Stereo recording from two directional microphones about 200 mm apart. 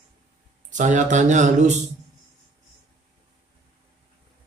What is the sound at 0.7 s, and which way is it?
Speech, 40° right (ahead or behind).